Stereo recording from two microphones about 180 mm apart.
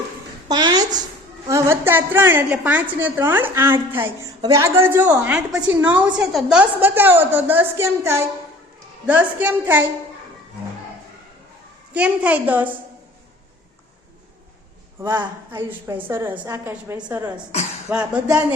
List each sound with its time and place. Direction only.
0.4 s a sound: 20° right (ahead or behind)
1.5 s a woman's voice: 15° right (ahead or behind)
11.9 s a woman's voice: 5° right (ahead or behind)
15.0 s a woman's voice: 25° right (ahead or behind)
15.5 s a woman's voice: 10° right (ahead or behind)